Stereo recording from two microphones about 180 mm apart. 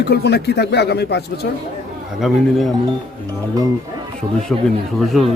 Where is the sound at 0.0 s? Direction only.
65° left (ahead or behind).